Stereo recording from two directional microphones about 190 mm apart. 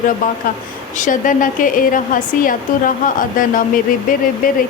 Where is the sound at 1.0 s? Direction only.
45° left (ahead or behind).